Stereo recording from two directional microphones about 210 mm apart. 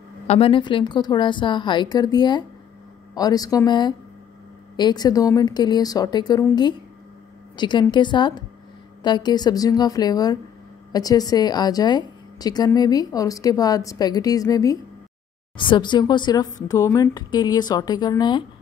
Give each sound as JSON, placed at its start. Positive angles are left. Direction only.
{"t": 0.3, "sound": "a woman's voice", "side_deg": 25}